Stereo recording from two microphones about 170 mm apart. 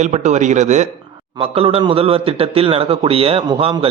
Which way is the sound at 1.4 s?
35° right (ahead or behind).